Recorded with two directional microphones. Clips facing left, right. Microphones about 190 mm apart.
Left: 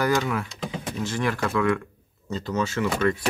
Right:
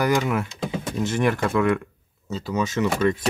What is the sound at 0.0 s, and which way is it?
Speech, 15° right (ahead or behind).